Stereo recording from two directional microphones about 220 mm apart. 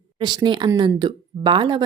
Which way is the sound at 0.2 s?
20° right (ahead or behind).